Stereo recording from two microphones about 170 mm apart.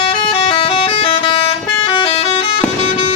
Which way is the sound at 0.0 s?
30° left (ahead or behind).